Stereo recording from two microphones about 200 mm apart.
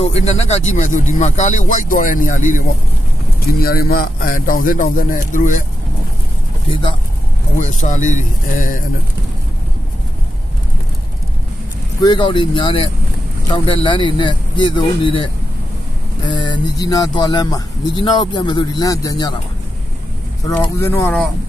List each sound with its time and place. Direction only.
0.0 s a man's voice: 30° left (ahead or behind)
7.5 s speech: 40° left (ahead or behind)
12.0 s speech: 25° left (ahead or behind)
16.3 s speech: 25° left (ahead or behind)
20.6 s speech: 15° left (ahead or behind)